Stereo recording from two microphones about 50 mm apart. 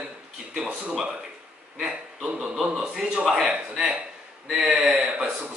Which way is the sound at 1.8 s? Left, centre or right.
Centre.